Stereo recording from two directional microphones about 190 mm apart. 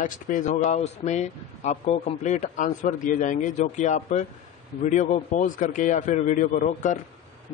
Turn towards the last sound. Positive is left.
turn(degrees=40)  # may be behind; listen again after turning